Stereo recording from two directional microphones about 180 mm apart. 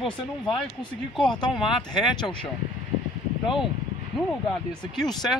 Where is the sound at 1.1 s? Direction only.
5° left (ahead or behind).